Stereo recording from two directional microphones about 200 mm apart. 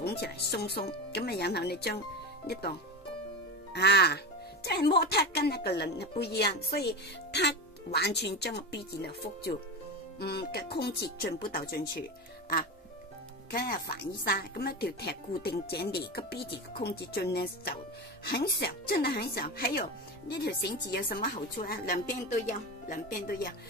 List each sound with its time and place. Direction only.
0.0 s a woman's voice: 55° left (ahead or behind)
3.7 s a woman's voice: 55° left (ahead or behind)
13.5 s speech: 50° left (ahead or behind)